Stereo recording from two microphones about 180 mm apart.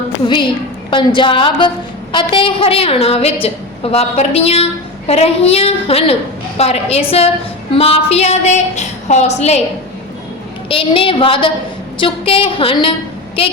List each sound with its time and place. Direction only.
0.9 s a woman's voice: 25° left (ahead or behind)
10.7 s a woman's voice: 30° left (ahead or behind)